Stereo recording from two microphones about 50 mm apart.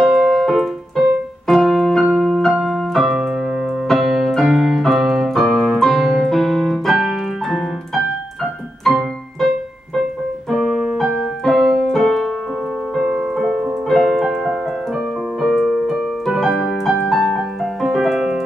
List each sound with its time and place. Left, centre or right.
0.0 s keyboard: centre
8.8 s piano: centre
10.5 s keyboard: centre
11.9 s piano: centre
13.0 s music: centre
13.4 s music: centre
13.8 s piano: centre
15.4 s keyboard: centre
15.9 s music: centre
17.4 s keyboard: centre